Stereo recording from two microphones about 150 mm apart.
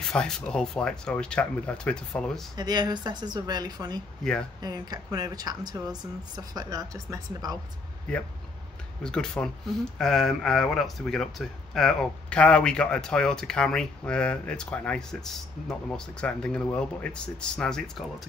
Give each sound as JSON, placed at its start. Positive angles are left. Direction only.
{"t": 0.0, "sound": "speech", "side_deg": 5}
{"t": 2.5, "sound": "speech", "side_deg": -25}
{"t": 4.2, "sound": "speech", "side_deg": 5}
{"t": 4.6, "sound": "speech", "side_deg": -25}
{"t": 9.0, "sound": "speech", "side_deg": 5}